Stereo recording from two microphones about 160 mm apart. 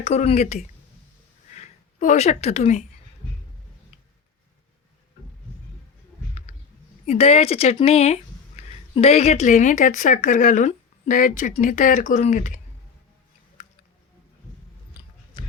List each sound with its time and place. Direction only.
0.0 s speech: 45° left (ahead or behind)
7.0 s speech: 40° left (ahead or behind)
13.6 s a sound: 45° left (ahead or behind)